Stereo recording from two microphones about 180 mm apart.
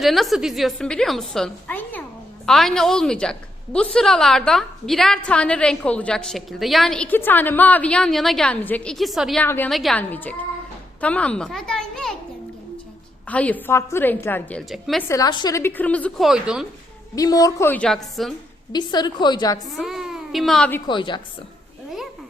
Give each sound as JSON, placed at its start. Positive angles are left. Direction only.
{"t": 0.0, "sound": "a woman's voice", "side_deg": 0}
{"t": 9.4, "sound": "a woman's voice", "side_deg": 10}
{"t": 13.2, "sound": "a woman's voice", "side_deg": 10}
{"t": 14.7, "sound": "a woman's voice", "side_deg": 0}
{"t": 15.1, "sound": "a woman's voice", "side_deg": 20}
{"t": 17.2, "sound": "a woman's voice", "side_deg": 20}
{"t": 18.7, "sound": "a woman's voice", "side_deg": 25}
{"t": 19.7, "sound": "speech", "side_deg": 0}
{"t": 20.8, "sound": "a woman's voice", "side_deg": 25}